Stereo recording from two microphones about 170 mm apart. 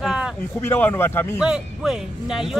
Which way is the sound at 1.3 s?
5° right (ahead or behind).